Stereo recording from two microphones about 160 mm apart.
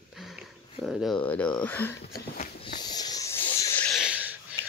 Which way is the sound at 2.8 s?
25° left (ahead or behind).